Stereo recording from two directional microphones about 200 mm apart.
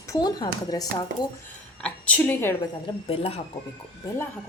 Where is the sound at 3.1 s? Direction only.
30° left (ahead or behind).